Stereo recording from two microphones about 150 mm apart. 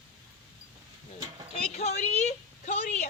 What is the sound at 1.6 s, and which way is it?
A woman's voice, 45° left (ahead or behind).